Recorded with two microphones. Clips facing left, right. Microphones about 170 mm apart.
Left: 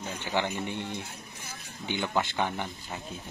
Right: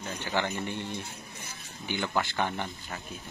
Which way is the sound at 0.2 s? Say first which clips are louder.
Left 1 dB; 15° left (ahead or behind).